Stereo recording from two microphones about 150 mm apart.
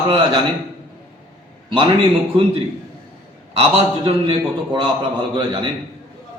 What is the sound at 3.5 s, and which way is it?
A man's voice, 40° right (ahead or behind).